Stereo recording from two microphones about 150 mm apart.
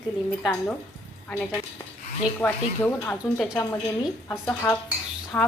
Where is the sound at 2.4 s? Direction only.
10° left (ahead or behind).